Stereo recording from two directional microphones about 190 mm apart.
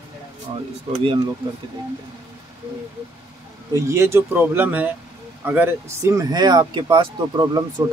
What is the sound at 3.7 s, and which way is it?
Speech, 15° right (ahead or behind).